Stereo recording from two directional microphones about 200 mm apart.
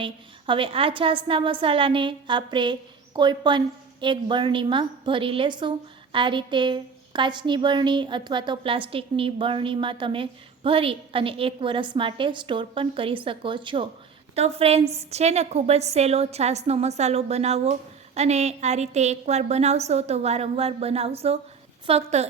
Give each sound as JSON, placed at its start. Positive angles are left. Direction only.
{"t": 0.0, "sound": "a woman's voice", "side_deg": -25}